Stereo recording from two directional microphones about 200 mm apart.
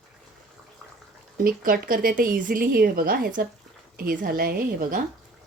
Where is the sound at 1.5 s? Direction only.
45° right (ahead or behind).